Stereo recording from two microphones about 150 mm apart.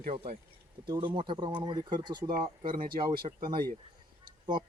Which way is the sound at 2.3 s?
70° right (ahead or behind).